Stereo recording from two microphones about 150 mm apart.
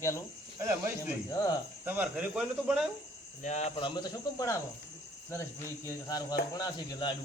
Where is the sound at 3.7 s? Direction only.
30° left (ahead or behind).